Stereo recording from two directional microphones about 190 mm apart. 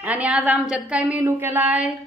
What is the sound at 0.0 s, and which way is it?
A woman's voice, 10° right (ahead or behind).